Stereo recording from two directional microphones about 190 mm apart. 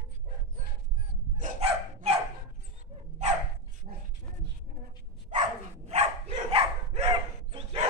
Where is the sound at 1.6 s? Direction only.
30° right (ahead or behind).